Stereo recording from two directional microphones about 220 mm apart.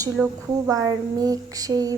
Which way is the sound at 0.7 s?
15° right (ahead or behind).